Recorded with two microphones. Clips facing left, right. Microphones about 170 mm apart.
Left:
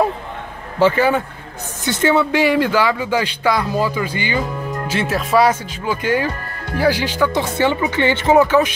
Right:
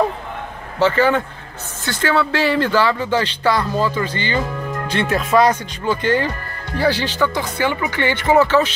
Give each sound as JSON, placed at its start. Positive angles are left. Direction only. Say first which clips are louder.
{"t": 0.7, "sound": "speech", "louder": "left 1 dB", "side_deg": 10}
{"t": 7.3, "sound": "speech", "louder": "left 3 dB", "side_deg": 25}